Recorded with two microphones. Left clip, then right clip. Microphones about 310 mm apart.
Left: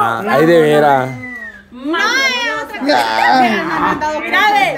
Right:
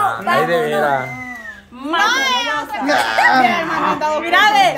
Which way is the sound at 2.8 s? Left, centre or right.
Left.